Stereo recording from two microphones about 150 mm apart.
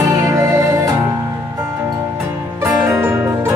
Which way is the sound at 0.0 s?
20° right (ahead or behind).